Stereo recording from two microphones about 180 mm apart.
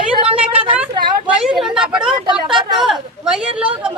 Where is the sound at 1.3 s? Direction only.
5° right (ahead or behind).